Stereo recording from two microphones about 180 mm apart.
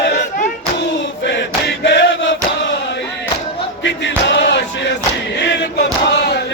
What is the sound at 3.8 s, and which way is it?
Music, 80° left.